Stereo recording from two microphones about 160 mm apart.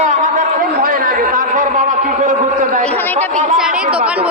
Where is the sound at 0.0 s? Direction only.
50° right (ahead or behind).